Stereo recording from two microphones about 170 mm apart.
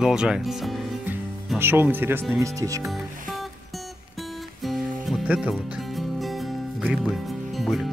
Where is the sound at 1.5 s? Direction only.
15° right (ahead or behind).